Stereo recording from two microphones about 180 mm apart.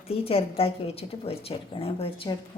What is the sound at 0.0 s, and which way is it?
A woman's voice, 35° left (ahead or behind).